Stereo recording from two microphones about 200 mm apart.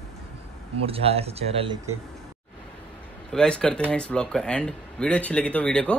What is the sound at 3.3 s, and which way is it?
Speech, 5° left (ahead or behind).